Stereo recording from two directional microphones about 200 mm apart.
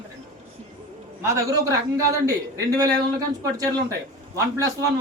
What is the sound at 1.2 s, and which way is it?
Speech, 15° right (ahead or behind).